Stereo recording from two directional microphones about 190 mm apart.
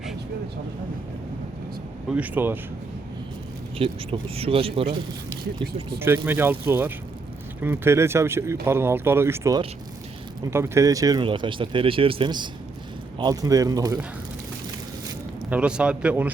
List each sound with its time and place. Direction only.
2.0 s speech: 10° right (ahead or behind)
3.8 s speech: 30° right (ahead or behind)
6.0 s speech: 10° right (ahead or behind)
15.4 s a man's voice: 5° right (ahead or behind)